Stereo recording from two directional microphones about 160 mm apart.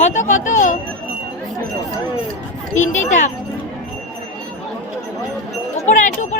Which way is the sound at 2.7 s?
50° left (ahead or behind).